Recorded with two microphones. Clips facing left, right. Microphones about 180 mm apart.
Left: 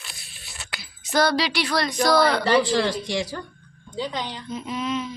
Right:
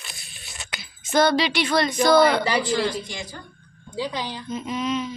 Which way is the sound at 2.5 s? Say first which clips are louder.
Left 3 dB; 70° left (ahead or behind).